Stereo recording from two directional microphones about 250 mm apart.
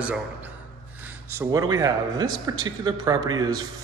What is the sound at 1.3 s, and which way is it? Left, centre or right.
A man's voice, centre.